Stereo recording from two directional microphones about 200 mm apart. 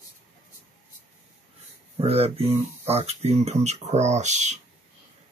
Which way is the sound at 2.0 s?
30° right (ahead or behind).